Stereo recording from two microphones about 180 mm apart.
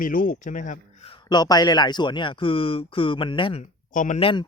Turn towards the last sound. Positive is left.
turn(degrees=30)  # may be behind; listen again after turning